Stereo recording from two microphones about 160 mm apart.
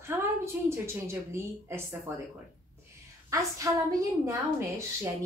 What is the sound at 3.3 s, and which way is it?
A woman's voice, 20° right (ahead or behind).